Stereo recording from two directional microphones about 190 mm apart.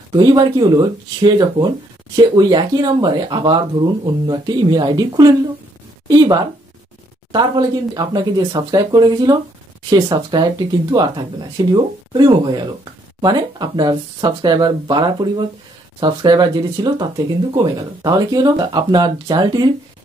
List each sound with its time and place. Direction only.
0.1 s speech: 20° right (ahead or behind)